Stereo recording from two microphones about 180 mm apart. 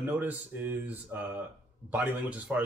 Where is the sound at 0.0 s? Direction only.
10° right (ahead or behind).